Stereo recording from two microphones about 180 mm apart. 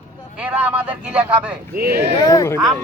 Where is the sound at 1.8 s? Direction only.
60° right (ahead or behind).